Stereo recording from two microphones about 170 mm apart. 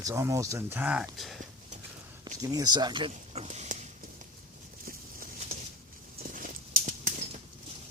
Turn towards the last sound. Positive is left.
turn(degrees=-45)  # may be behind; listen again after turning